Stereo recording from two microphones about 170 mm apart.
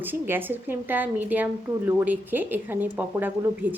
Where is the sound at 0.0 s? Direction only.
10° right (ahead or behind).